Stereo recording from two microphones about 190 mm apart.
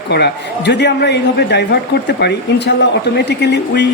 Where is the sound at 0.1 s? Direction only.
65° left (ahead or behind).